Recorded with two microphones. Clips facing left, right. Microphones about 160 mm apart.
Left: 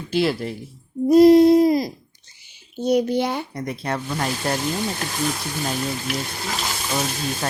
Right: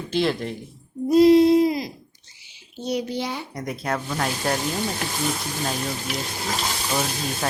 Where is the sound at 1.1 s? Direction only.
45° left (ahead or behind).